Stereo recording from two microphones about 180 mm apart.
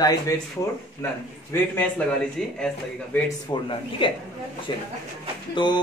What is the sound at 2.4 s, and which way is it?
Speech, centre (ahead or behind).